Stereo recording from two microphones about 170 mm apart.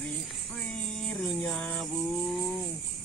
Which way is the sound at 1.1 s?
5° left (ahead or behind).